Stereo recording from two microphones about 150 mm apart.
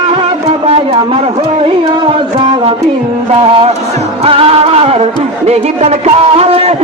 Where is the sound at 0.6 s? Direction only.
45° right (ahead or behind).